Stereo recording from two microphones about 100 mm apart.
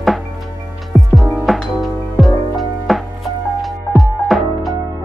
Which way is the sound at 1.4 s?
Centre (ahead or behind).